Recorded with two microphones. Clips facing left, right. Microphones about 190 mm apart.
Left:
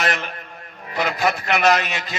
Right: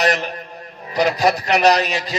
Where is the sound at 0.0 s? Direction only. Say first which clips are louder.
Right 5 dB; 40° right (ahead or behind).